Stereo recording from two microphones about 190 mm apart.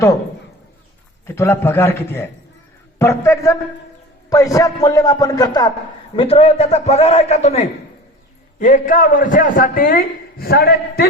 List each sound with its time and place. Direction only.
1.4 s a man's voice: 10° left (ahead or behind); by 11.0 s 55° left (ahead or behind)